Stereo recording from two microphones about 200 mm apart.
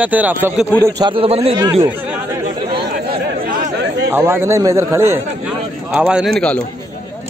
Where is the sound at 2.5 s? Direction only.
45° right (ahead or behind).